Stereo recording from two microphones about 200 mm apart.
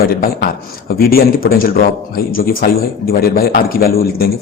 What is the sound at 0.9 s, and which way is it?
A man's voice, 50° left (ahead or behind).